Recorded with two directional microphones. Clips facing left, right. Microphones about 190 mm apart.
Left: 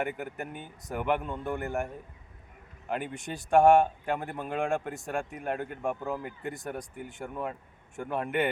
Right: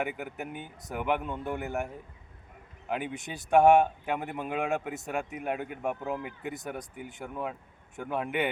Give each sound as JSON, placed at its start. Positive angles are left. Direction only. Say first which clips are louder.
{"t": 0.0, "sound": "speech", "louder": "left 1 dB", "side_deg": -5}
{"t": 2.9, "sound": "speech", "louder": "even", "side_deg": -5}